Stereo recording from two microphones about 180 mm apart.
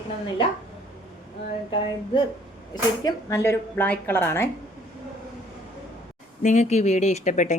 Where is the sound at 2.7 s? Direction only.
20° left (ahead or behind).